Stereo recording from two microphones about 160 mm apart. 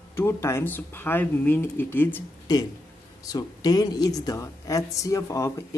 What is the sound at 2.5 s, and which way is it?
A woman's voice, 25° left (ahead or behind).